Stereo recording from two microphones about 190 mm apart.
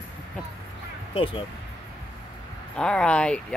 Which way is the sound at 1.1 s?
30° left (ahead or behind).